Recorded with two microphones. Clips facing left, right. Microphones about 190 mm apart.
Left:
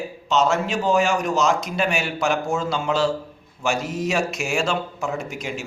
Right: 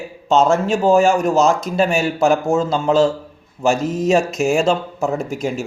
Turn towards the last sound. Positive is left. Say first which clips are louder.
# right 7 dB
turn(degrees=-40)  # may be behind; listen again after turning